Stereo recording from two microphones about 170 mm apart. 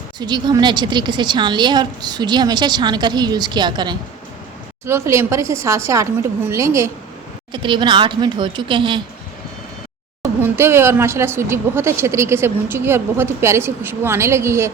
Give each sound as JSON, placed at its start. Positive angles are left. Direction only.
{"t": 0.2, "sound": "a woman's voice", "side_deg": -25}
{"t": 7.5, "sound": "a woman's voice", "side_deg": -30}
{"t": 10.4, "sound": "speech", "side_deg": -15}